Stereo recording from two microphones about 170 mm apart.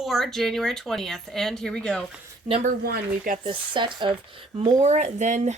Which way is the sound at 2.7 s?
55° right (ahead or behind).